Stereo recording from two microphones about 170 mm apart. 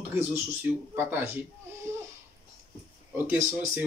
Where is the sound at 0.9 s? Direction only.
10° right (ahead or behind).